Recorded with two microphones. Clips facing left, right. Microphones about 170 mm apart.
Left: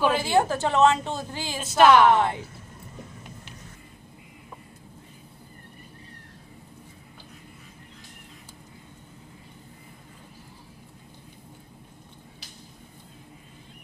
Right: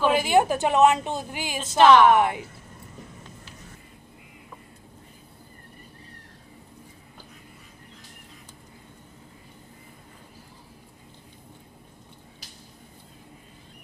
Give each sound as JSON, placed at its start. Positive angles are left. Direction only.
{"t": 0.1, "sound": "a woman's voice", "side_deg": -15}
{"t": 1.8, "sound": "a woman's voice", "side_deg": 10}
{"t": 2.0, "sound": "a woman's voice", "side_deg": -15}